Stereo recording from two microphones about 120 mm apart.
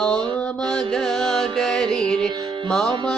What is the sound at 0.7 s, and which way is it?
Music, 5° left (ahead or behind).